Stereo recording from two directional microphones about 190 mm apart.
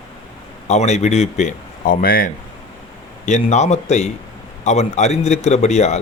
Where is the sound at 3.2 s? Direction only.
35° left (ahead or behind).